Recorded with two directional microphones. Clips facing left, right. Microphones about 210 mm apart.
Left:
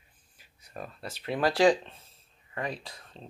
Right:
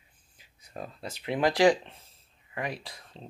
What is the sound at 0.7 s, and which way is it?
Speech, 20° right (ahead or behind).